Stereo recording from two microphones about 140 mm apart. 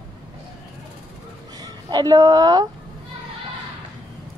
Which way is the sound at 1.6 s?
30° right (ahead or behind).